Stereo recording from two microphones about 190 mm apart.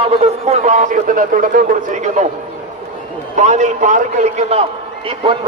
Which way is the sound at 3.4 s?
40° right (ahead or behind).